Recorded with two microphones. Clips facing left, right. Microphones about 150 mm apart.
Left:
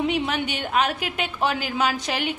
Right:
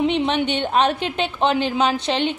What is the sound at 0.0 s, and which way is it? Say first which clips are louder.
A woman's voice: right 5 dB; 25° right (ahead or behind).